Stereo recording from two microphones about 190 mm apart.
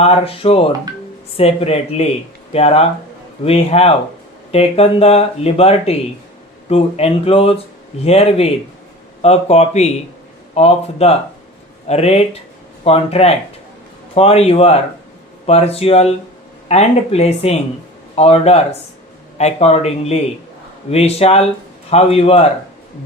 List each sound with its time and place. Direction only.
0.0 s speech: 30° left (ahead or behind)